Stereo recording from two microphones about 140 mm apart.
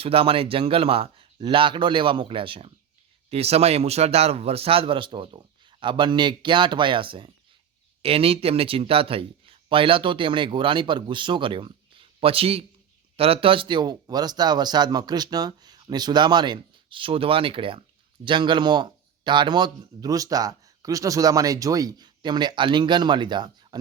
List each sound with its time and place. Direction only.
0.0 s speech: 45° right (ahead or behind)